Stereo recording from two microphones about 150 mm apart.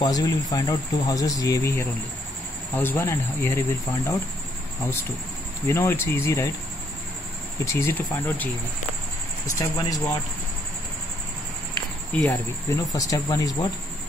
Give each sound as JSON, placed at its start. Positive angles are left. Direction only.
{"t": 0.0, "sound": "speech", "side_deg": 25}
{"t": 5.7, "sound": "speech", "side_deg": 15}
{"t": 7.6, "sound": "speech", "side_deg": 15}
{"t": 9.6, "sound": "speech", "side_deg": 20}
{"t": 12.1, "sound": "speech", "side_deg": 10}
{"t": 12.6, "sound": "speech", "side_deg": 20}